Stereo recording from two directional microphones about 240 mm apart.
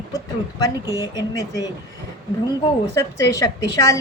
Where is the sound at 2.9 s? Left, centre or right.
Centre.